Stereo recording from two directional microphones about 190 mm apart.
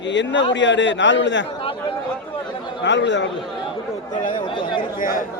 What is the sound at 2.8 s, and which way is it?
Speech, 70° left (ahead or behind).